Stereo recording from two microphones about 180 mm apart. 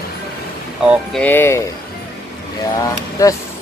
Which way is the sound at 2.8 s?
20° left (ahead or behind).